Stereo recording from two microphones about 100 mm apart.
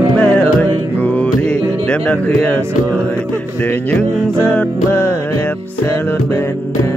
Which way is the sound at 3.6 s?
15° left (ahead or behind).